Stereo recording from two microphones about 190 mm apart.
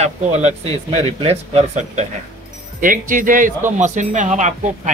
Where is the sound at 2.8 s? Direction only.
45° right (ahead or behind).